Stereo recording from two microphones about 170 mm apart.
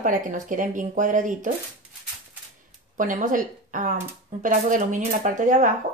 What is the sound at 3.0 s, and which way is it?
Speech, 50° right (ahead or behind).